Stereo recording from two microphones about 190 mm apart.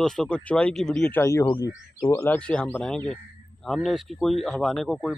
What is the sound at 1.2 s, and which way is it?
Speech, 15° left (ahead or behind).